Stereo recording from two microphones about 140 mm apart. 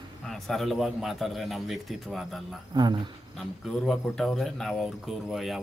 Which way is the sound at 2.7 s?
35° right (ahead or behind).